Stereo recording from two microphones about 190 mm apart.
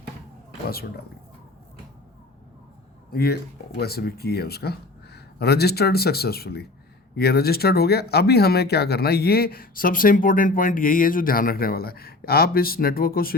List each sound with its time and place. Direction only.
0.7 s speech: 55° left (ahead or behind)
3.1 s speech: 55° left (ahead or behind)